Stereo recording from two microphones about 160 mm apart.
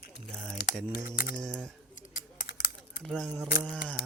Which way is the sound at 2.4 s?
80° left.